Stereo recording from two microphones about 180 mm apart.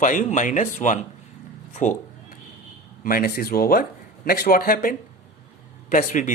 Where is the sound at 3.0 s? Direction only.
50° left (ahead or behind).